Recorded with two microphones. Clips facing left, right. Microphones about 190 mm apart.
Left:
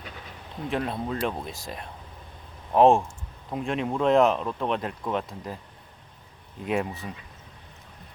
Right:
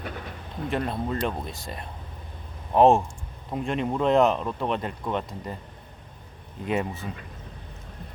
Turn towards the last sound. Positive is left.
turn(degrees=0)  # may be behind; listen again after turning